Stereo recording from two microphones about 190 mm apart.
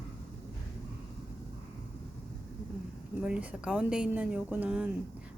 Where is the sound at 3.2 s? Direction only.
5° right (ahead or behind).